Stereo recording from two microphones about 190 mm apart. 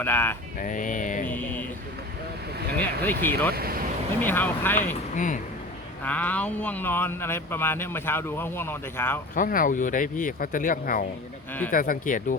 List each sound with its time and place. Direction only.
0.0 s speech: 10° left (ahead or behind)
0.6 s speech: 45° left (ahead or behind)
1.3 s a sound: 10° left (ahead or behind)
2.7 s speech: 10° left (ahead or behind)
3.5 s speech: 50° right (ahead or behind)
4.2 s speech: 10° left (ahead or behind)
5.1 s speech: 40° left (ahead or behind)
6.1 s speech: 10° left (ahead or behind)
9.3 s speech: 45° left (ahead or behind)